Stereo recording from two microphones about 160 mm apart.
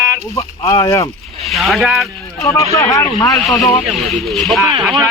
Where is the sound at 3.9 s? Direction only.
Centre (ahead or behind).